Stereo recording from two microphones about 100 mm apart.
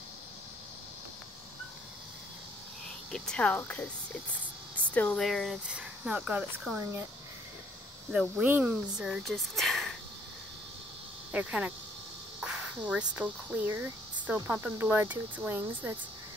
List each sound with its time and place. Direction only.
3.1 s speech: 10° left (ahead or behind)
4.7 s a sound: 15° left (ahead or behind)
5.2 s speech: centre (ahead or behind)
5.7 s speech: 10° right (ahead or behind)
6.8 s speech: 25° right (ahead or behind)
8.1 s speech: 10° right (ahead or behind)
9.2 s speech: centre (ahead or behind)
11.3 s speech: 10° right (ahead or behind)